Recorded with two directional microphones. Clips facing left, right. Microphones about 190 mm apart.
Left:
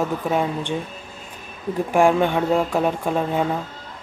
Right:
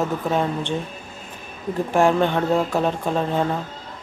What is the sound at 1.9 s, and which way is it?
Speech, 10° left (ahead or behind).